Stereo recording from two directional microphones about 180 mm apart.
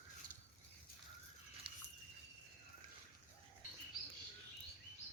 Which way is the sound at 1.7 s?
30° right (ahead or behind).